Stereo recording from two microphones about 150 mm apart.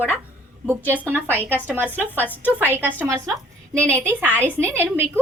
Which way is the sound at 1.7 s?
15° right (ahead or behind).